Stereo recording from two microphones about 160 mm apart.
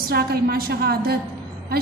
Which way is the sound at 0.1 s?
70° right (ahead or behind).